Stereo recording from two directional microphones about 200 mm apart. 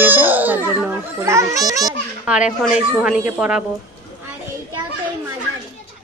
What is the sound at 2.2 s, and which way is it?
A child's voice, 5° right (ahead or behind).